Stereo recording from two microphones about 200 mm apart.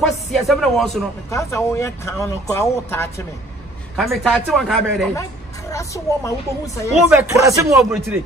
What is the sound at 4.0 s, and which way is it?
Speech, centre (ahead or behind).